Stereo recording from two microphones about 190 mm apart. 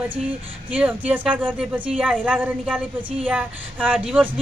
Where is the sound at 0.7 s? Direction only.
5° right (ahead or behind).